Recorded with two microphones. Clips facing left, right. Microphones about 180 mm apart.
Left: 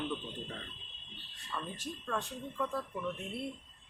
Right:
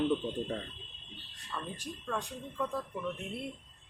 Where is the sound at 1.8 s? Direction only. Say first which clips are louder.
Even; 10° right (ahead or behind).